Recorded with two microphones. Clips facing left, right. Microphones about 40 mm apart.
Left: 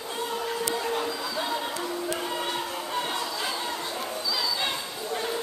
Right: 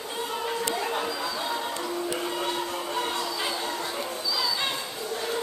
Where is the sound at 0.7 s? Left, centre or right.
Centre.